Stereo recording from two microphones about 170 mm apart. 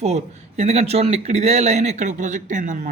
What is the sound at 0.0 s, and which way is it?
Speech, 40° right (ahead or behind).